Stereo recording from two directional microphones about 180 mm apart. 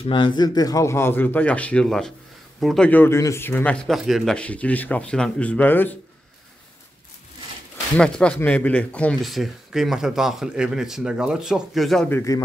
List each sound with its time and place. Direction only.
0.0 s speech: 25° left (ahead or behind); by 5.9 s 10° left (ahead or behind)
8.0 s speech: 5° left (ahead or behind)
12.1 s speech: 15° left (ahead or behind)